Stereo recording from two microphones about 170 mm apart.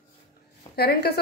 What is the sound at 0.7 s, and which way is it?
Speech, 70° left (ahead or behind).